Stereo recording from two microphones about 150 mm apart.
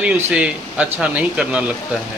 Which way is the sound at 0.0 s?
10° right (ahead or behind).